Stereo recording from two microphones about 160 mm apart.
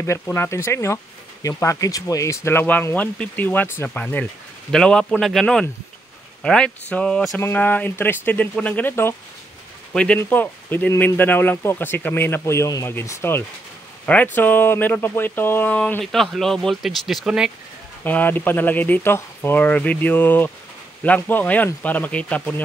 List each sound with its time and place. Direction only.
0.0 s a man's voice: 15° left (ahead or behind); by 17.5 s 5° right (ahead or behind)
18.0 s speech: 10° left (ahead or behind)